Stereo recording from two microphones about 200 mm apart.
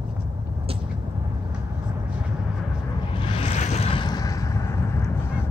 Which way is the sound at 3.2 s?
30° left (ahead or behind).